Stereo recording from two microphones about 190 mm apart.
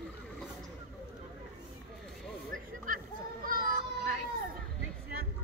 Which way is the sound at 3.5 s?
50° right (ahead or behind).